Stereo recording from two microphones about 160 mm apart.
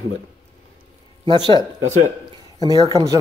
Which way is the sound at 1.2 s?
30° right (ahead or behind).